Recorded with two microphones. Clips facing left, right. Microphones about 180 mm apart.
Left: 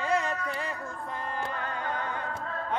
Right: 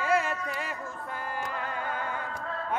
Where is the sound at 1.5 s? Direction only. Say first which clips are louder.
Even; 10° right (ahead or behind).